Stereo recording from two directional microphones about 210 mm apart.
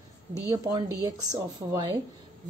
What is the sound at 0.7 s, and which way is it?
Speech, 15° right (ahead or behind).